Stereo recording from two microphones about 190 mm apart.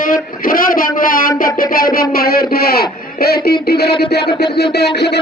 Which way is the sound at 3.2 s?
55° left (ahead or behind).